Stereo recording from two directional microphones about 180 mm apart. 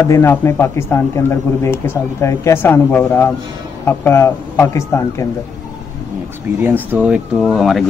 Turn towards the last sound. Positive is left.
turn(degrees=0)  # may be behind; listen again after turning